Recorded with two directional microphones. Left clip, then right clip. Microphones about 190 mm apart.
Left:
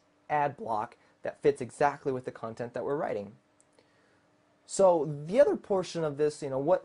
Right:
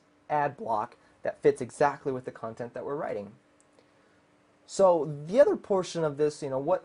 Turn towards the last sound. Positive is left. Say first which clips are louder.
# right 1 dB
turn(degrees=5)  # may be behind; listen again after turning